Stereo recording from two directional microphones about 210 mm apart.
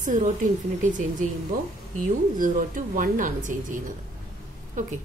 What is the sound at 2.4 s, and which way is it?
Speech, 40° right (ahead or behind).